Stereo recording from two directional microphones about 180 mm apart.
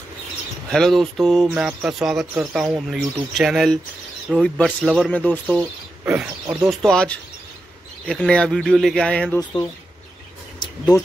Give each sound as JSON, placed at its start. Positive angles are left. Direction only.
{"t": 0.7, "sound": "speech", "side_deg": 5}
{"t": 5.1, "sound": "speech", "side_deg": 10}
{"t": 5.5, "sound": "speech", "side_deg": -10}
{"t": 6.7, "sound": "speech", "side_deg": 5}
{"t": 10.9, "sound": "speech", "side_deg": 20}